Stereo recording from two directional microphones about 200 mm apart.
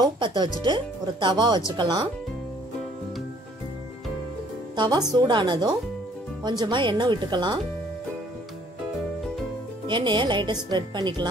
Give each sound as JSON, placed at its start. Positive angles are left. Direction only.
{"t": 0.0, "sound": "a woman's voice", "side_deg": -20}
{"t": 4.7, "sound": "a woman's voice", "side_deg": -20}
{"t": 9.8, "sound": "a woman's voice", "side_deg": -25}